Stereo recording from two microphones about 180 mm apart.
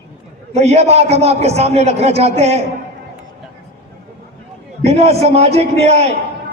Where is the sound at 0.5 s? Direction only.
35° right (ahead or behind).